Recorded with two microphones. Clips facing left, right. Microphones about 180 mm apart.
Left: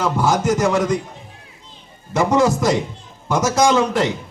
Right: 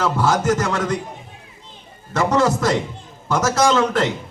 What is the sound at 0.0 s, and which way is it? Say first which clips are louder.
Speech: left 1 dB; 15° left (ahead or behind).